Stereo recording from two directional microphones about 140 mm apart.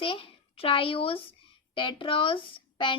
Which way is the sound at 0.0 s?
40° left (ahead or behind).